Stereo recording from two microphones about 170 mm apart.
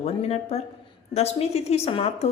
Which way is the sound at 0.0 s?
35° left (ahead or behind).